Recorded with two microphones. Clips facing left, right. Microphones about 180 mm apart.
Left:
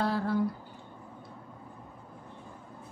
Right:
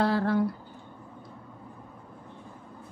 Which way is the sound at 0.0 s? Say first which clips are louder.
Right 4 dB; 80° right.